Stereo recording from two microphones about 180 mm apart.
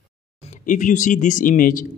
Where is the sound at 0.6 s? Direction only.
45° left (ahead or behind).